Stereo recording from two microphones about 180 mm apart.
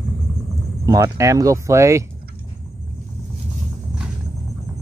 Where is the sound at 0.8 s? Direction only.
15° right (ahead or behind).